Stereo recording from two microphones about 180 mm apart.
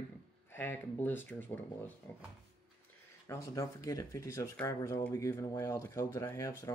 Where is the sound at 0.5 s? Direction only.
10° left (ahead or behind).